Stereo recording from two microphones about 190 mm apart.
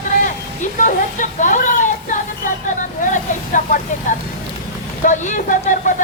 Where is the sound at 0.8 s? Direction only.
40° left (ahead or behind).